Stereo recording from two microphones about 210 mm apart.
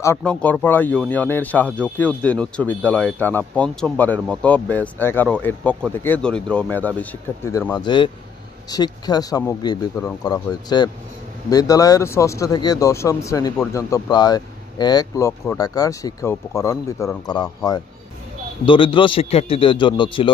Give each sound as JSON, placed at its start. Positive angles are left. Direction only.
{"t": 0.0, "sound": "speech", "side_deg": 10}